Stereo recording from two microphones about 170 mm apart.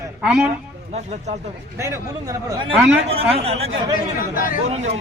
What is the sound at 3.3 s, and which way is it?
Speech, 35° right (ahead or behind).